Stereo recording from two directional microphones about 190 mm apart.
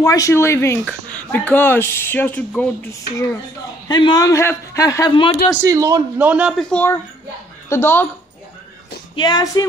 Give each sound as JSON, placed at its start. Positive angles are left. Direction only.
{"t": 0.0, "sound": "speech", "side_deg": 15}
{"t": 3.9, "sound": "a man's voice", "side_deg": 20}
{"t": 5.6, "sound": "a man's voice", "side_deg": -15}
{"t": 6.7, "sound": "speech", "side_deg": 10}
{"t": 9.1, "sound": "a man's voice", "side_deg": 25}